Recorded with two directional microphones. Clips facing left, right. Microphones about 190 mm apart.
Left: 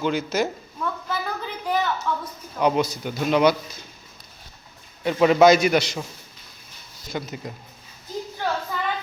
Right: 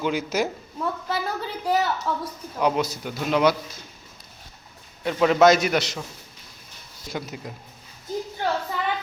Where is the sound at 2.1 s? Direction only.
35° right (ahead or behind).